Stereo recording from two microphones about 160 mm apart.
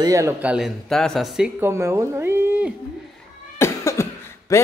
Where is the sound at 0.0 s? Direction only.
20° right (ahead or behind).